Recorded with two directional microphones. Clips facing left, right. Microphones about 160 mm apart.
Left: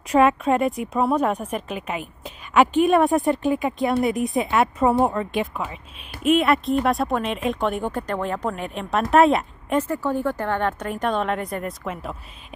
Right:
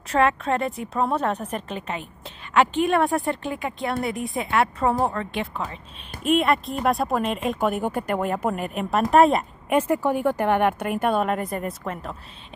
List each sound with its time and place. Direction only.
0.1 s a woman's voice: 15° left (ahead or behind)
6.2 s a woman's voice: centre (ahead or behind)
9.8 s speech: 15° right (ahead or behind); by 12.2 s 5° left (ahead or behind)